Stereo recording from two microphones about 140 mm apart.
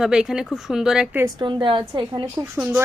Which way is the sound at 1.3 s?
35° right (ahead or behind).